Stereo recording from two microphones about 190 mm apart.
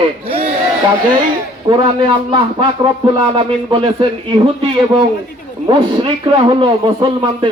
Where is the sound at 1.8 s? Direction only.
25° right (ahead or behind).